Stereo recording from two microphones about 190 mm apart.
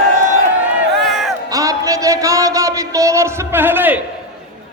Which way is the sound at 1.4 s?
20° right (ahead or behind).